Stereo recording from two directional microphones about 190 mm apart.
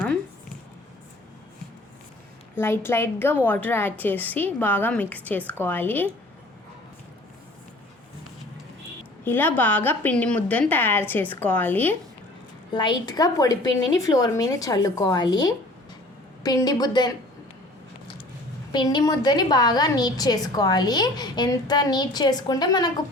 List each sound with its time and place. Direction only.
2.6 s a woman's voice: 10° left (ahead or behind)
9.2 s a woman's voice: 10° left (ahead or behind)
12.7 s a woman's voice: 25° left (ahead or behind)
18.7 s a woman's voice: 25° left (ahead or behind)